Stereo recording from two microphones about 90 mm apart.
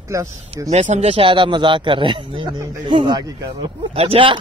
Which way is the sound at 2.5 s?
35° right (ahead or behind).